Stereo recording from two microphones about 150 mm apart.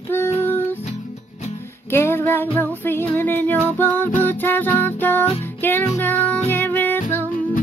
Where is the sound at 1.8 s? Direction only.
15° left (ahead or behind).